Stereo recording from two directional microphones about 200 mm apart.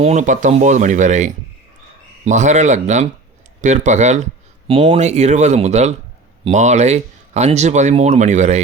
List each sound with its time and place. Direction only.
0.0 s speech: 35° right (ahead or behind)